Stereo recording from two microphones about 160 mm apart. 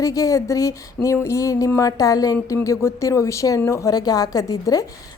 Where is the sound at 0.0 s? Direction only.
20° left (ahead or behind).